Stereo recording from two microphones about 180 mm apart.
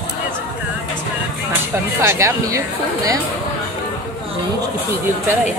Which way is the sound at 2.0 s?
15° right (ahead or behind).